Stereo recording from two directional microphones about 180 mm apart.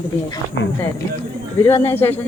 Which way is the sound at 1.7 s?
10° left (ahead or behind).